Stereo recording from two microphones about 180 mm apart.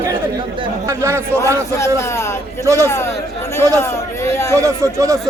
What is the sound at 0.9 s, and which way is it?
Speech, 15° right (ahead or behind).